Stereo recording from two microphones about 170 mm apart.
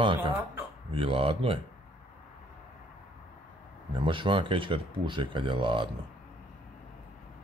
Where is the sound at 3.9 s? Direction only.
30° right (ahead or behind).